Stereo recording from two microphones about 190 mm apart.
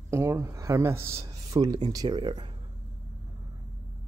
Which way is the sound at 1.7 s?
20° right (ahead or behind).